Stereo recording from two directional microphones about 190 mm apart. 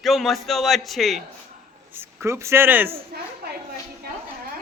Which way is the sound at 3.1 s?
55° right (ahead or behind).